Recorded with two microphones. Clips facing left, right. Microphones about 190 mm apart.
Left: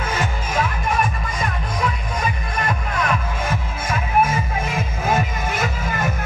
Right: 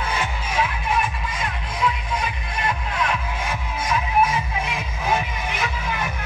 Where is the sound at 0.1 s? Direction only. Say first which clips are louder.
Left 3 dB; 45° left (ahead or behind).